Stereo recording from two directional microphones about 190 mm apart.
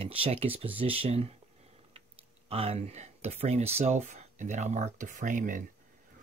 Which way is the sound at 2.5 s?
30° right (ahead or behind).